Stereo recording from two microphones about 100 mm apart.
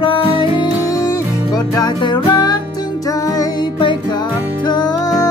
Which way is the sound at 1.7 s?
45° left (ahead or behind).